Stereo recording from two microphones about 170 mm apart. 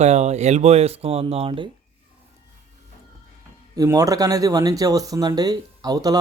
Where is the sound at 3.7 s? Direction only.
20° right (ahead or behind).